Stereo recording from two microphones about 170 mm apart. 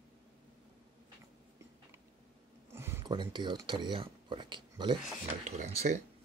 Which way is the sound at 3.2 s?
25° right (ahead or behind).